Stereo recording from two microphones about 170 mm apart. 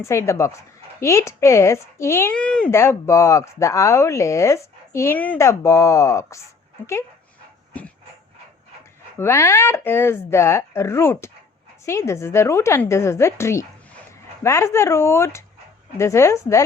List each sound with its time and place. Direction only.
0.0 s speech: 15° left (ahead or behind)
9.1 s speech: 15° left (ahead or behind)